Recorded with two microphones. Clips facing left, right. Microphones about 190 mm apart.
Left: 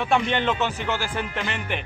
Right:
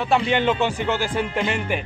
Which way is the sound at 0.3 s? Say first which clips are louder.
Right 4 dB; 10° right (ahead or behind).